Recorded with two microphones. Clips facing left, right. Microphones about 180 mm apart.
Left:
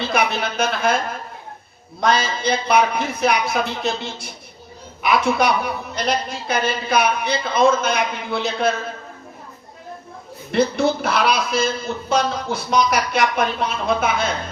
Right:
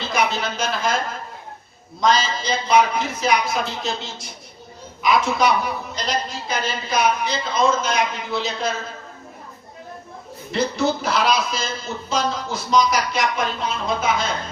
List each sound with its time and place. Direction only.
0.1 s a sound: 60° left (ahead or behind)
2.0 s a woman's voice: 60° left (ahead or behind)
10.5 s a woman's voice: 60° left (ahead or behind)